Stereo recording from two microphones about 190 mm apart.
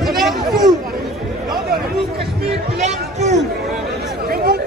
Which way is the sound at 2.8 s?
35° right (ahead or behind).